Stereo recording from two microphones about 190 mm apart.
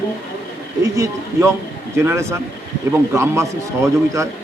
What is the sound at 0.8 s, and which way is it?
A man's voice, 15° right (ahead or behind).